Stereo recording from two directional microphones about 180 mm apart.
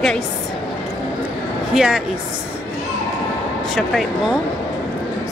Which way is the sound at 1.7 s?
5° right (ahead or behind).